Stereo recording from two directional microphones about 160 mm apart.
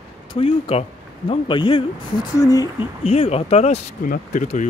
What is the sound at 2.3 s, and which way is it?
Speech, 20° left (ahead or behind).